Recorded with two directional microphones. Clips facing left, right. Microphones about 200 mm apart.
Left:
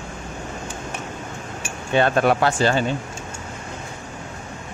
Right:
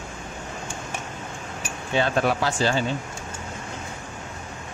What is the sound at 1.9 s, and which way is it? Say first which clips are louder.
Speech: left 5 dB; 60° left (ahead or behind).